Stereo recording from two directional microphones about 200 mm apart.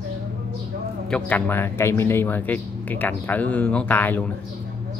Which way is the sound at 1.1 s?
10° left (ahead or behind).